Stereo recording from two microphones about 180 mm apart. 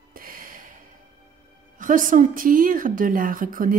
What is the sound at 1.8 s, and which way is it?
A woman's voice, 45° right (ahead or behind).